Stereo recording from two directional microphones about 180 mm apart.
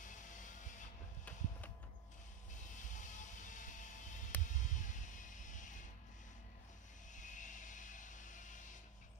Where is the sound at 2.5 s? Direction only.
45° left (ahead or behind).